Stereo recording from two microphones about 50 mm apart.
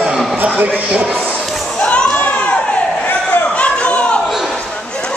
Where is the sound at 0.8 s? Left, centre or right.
Centre.